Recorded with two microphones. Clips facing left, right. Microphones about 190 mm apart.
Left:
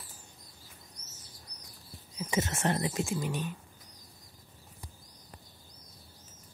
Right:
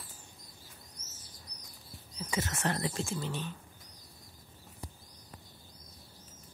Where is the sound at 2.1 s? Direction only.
25° left (ahead or behind).